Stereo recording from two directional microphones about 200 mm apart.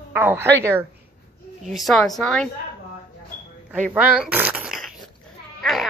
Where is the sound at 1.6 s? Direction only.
Centre (ahead or behind).